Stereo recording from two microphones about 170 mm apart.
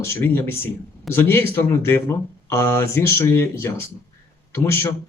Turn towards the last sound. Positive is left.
turn(degrees=15)  # may be behind; listen again after turning